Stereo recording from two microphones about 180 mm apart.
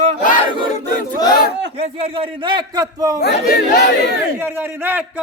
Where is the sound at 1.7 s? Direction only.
35° right (ahead or behind).